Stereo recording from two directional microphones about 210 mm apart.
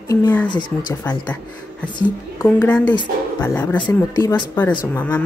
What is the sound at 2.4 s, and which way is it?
Speech, 5° left (ahead or behind).